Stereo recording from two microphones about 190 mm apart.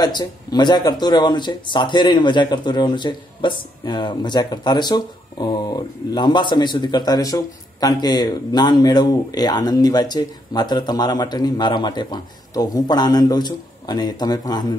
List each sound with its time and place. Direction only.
0.0 s speech: 20° left (ahead or behind)